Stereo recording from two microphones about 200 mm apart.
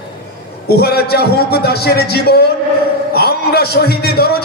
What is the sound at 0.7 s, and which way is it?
A man's voice, 55° left (ahead or behind).